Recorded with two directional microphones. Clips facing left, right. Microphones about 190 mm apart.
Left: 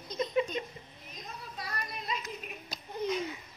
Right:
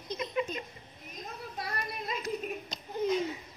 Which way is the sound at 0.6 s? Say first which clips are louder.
Left 5 dB; 25° left (ahead or behind).